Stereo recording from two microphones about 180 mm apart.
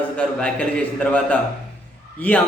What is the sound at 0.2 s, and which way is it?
A man's voice, 5° left (ahead or behind).